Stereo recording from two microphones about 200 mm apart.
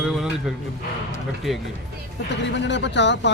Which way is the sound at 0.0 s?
Centre (ahead or behind).